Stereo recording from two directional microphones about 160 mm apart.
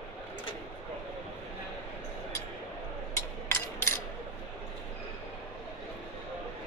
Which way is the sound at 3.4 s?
15° left (ahead or behind).